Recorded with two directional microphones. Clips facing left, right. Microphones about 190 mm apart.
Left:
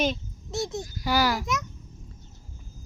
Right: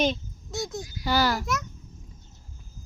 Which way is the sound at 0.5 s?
25° left (ahead or behind).